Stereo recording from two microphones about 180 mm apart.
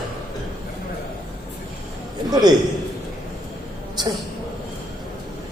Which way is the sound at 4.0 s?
25° right (ahead or behind).